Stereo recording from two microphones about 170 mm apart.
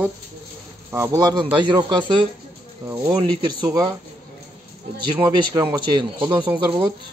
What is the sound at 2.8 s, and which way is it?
Speech, 10° right (ahead or behind).